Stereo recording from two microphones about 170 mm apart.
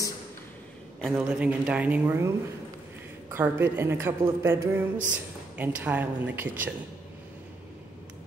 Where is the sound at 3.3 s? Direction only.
15° right (ahead or behind).